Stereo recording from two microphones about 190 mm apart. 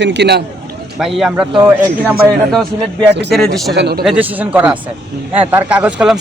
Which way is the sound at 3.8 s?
60° right (ahead or behind).